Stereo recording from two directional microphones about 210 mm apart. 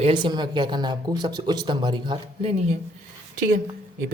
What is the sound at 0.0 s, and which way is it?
Speech, 20° right (ahead or behind).